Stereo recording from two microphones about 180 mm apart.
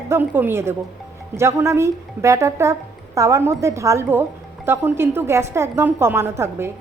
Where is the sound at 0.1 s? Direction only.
10° right (ahead or behind).